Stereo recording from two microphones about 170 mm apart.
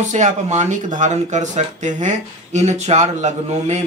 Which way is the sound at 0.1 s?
45° right (ahead or behind).